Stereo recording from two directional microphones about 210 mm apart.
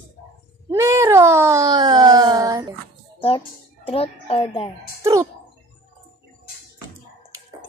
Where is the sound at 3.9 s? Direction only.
25° left (ahead or behind).